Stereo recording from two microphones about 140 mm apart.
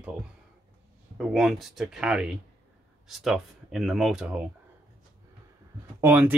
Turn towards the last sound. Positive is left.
turn(degrees=-15)  # may be behind; listen again after turning